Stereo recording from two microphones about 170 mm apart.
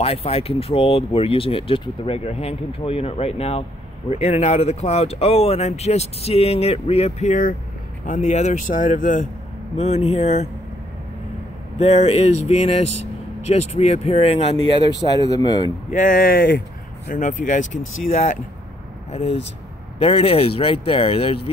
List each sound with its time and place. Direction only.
0.0 s speech: 35° left (ahead or behind)
9.8 s speech: 40° left (ahead or behind)
11.8 s speech: 40° left (ahead or behind); by 15.7 s 25° left (ahead or behind)
15.9 s speech: 50° left (ahead or behind)
20.0 s speech: 30° left (ahead or behind)